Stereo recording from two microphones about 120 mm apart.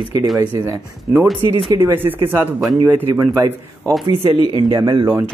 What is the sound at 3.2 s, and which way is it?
Speech, 30° right (ahead or behind).